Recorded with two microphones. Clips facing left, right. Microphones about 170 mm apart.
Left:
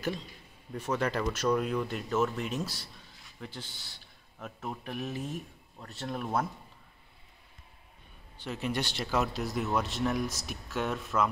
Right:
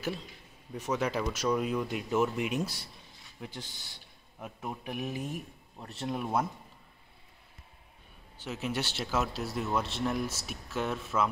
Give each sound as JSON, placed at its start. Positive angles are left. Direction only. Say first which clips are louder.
{"t": 0.7, "sound": "speech", "louder": "even", "side_deg": -10}
{"t": 5.8, "sound": "speech", "louder": "right 2 dB", "side_deg": -20}
{"t": 6.1, "sound": "speech", "louder": "right 1 dB", "side_deg": -10}
{"t": 8.4, "sound": "speech", "louder": "left 1 dB", "side_deg": -5}